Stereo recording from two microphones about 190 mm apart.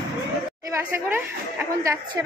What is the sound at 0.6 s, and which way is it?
A child's voice, 15° right (ahead or behind).